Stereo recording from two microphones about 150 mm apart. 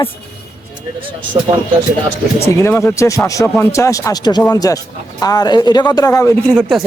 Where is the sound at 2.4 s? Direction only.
15° left (ahead or behind).